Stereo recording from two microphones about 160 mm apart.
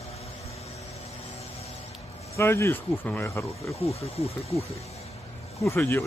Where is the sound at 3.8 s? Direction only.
40° left (ahead or behind).